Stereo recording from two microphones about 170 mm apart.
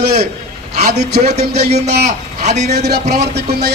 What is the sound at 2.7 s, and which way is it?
Speech, 70° right (ahead or behind).